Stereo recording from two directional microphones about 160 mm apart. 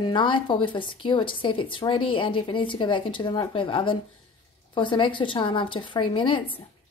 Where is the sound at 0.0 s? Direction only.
30° left (ahead or behind).